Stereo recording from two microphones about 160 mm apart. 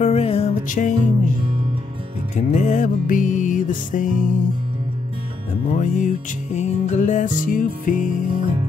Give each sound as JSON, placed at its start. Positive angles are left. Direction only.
{"t": 0.0, "sound": "music", "side_deg": 40}
{"t": 0.7, "sound": "music", "side_deg": 55}
{"t": 2.3, "sound": "music", "side_deg": 50}
{"t": 5.8, "sound": "music", "side_deg": 50}